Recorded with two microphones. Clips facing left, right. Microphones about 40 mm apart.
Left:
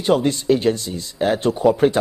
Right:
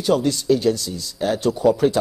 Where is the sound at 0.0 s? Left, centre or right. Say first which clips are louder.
Left 2 dB; left.